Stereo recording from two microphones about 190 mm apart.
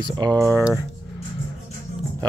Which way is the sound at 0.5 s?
5° right (ahead or behind).